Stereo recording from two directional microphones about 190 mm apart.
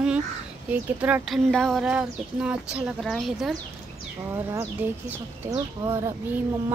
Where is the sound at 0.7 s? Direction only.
10° right (ahead or behind).